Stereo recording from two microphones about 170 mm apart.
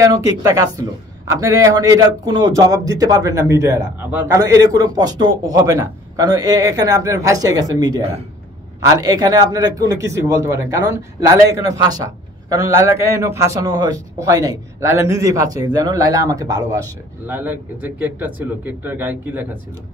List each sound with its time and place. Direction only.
0.0 s a man's voice: 20° right (ahead or behind)